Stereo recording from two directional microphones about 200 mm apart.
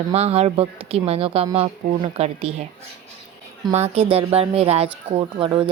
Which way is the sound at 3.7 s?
35° right (ahead or behind).